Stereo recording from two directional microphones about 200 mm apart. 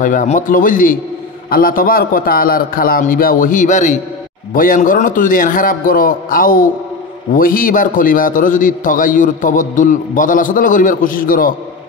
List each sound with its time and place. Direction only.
0.0 s a man's voice: 40° left (ahead or behind)